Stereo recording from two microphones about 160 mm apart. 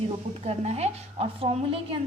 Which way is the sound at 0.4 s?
40° right (ahead or behind).